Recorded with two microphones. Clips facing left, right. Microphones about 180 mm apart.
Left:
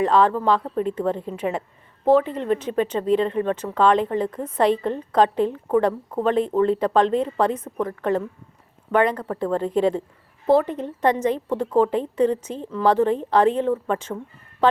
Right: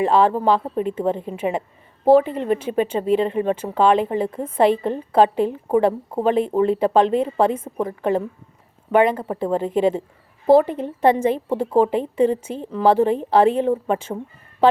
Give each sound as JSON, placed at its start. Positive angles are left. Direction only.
{"t": 0.0, "sound": "a woman's voice", "side_deg": -5}
{"t": 9.2, "sound": "a woman's voice", "side_deg": -20}
{"t": 9.5, "sound": "a woman's voice", "side_deg": -5}